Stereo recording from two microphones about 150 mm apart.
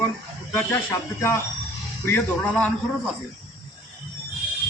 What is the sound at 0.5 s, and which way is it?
A man's voice, 20° left (ahead or behind).